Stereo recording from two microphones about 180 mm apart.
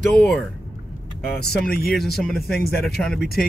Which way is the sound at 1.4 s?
55° left (ahead or behind).